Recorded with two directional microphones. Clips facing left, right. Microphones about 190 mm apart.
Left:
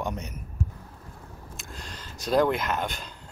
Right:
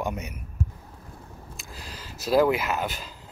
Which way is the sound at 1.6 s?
5° right (ahead or behind).